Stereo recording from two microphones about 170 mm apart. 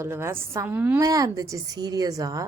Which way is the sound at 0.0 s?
15° right (ahead or behind).